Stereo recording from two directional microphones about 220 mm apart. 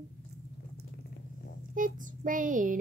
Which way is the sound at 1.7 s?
35° right (ahead or behind).